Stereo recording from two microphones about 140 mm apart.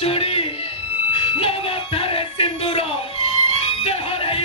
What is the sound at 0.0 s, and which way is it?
Music, 45° left (ahead or behind).